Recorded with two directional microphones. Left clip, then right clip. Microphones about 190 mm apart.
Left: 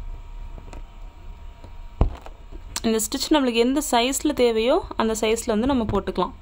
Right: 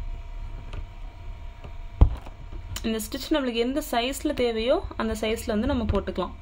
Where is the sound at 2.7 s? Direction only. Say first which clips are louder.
Left 7 dB; 40° left (ahead or behind).